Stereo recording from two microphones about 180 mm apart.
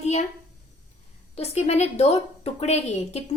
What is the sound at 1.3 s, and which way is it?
A woman's voice, 35° left (ahead or behind).